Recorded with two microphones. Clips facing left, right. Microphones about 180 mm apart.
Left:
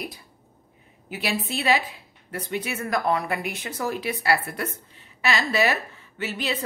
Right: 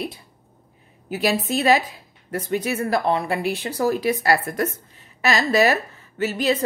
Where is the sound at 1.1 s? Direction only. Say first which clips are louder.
Right 6 dB; 40° right (ahead or behind).